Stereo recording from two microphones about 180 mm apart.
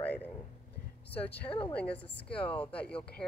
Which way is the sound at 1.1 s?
10° left (ahead or behind).